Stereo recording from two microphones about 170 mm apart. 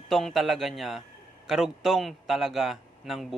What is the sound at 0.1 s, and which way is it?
Speech, centre (ahead or behind).